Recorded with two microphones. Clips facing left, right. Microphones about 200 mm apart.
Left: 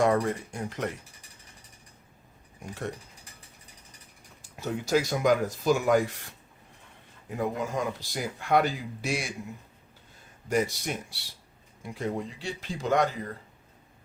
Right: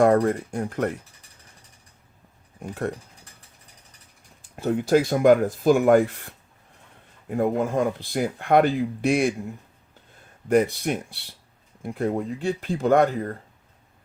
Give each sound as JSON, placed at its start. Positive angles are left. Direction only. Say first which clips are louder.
{"t": 0.0, "sound": "speech", "louder": "right 6 dB", "side_deg": -55}
{"t": 2.6, "sound": "speech", "louder": "right 7 dB", "side_deg": -55}
{"t": 4.4, "sound": "speech", "louder": "right 8 dB", "side_deg": -55}
{"t": 10.5, "sound": "speech", "louder": "right 7 dB", "side_deg": -55}